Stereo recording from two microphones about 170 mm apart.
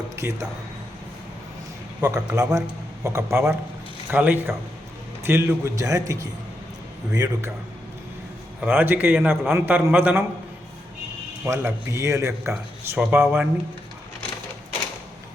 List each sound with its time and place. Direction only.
0.2 s speech: 15° right (ahead or behind)
2.0 s a man's voice: 20° right (ahead or behind)
8.6 s a man's voice: 10° right (ahead or behind)
11.4 s a man's voice: 15° right (ahead or behind)